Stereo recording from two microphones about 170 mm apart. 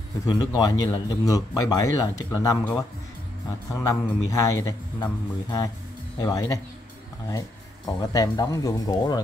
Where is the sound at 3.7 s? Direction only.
20° left (ahead or behind).